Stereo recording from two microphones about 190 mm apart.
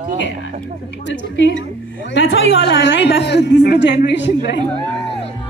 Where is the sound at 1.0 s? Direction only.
70° left (ahead or behind).